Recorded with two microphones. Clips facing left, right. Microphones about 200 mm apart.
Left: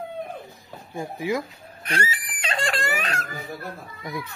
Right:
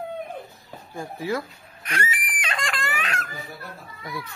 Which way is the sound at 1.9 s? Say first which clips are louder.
Left 2 dB; 30° left (ahead or behind).